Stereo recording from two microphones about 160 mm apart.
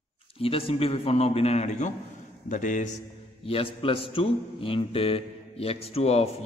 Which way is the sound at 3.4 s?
35° left (ahead or behind).